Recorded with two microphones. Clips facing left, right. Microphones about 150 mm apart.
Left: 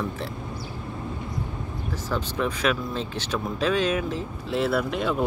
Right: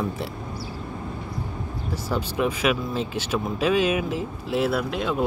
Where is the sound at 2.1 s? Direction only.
10° right (ahead or behind).